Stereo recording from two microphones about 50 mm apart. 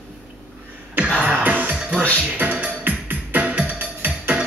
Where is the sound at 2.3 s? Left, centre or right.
Right.